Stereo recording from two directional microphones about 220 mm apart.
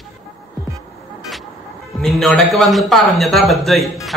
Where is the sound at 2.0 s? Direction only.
Centre (ahead or behind).